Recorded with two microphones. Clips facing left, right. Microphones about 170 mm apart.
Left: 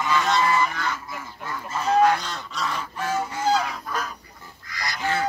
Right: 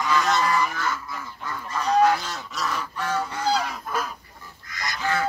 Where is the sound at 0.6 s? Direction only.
5° right (ahead or behind).